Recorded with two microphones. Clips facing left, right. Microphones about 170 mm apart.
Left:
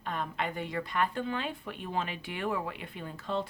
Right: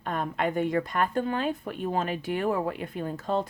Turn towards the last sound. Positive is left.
turn(degrees=-45)  # may be behind; listen again after turning